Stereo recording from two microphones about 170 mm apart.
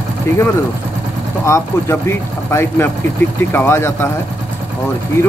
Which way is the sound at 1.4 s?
15° left (ahead or behind).